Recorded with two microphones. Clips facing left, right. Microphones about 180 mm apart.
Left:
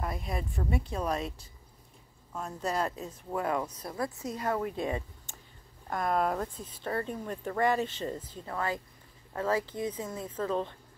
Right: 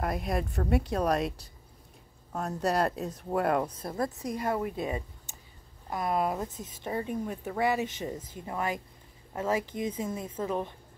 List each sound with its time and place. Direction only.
0.0 s a woman's voice: 65° right (ahead or behind)
4.2 s speech: 10° right (ahead or behind)